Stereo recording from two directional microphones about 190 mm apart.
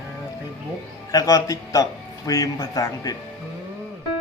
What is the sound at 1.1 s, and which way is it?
A man's voice, 20° left (ahead or behind).